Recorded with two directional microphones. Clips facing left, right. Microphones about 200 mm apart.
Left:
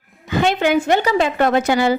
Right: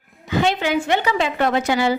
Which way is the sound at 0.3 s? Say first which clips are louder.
Left 3 dB; 50° left (ahead or behind).